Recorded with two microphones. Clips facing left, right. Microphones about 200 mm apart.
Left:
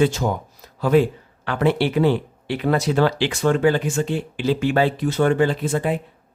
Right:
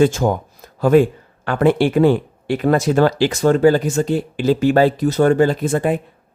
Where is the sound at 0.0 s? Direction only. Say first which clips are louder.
Right 4 dB; 50° right (ahead or behind).